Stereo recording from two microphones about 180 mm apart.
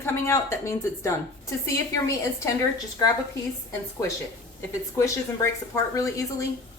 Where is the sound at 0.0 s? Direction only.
15° left (ahead or behind).